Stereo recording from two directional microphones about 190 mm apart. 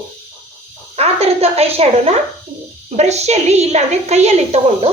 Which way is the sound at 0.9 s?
30° right (ahead or behind).